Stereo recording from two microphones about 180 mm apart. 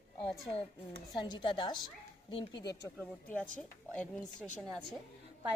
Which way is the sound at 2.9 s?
10° left (ahead or behind).